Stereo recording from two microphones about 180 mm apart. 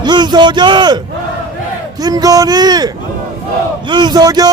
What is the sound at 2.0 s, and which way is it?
Speech, 20° right (ahead or behind).